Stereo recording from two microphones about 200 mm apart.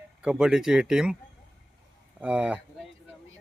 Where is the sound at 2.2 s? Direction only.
5° right (ahead or behind).